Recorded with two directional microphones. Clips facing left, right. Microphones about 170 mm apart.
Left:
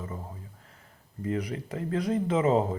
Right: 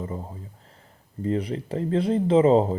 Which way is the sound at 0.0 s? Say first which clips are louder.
Right 6 dB; 30° right (ahead or behind).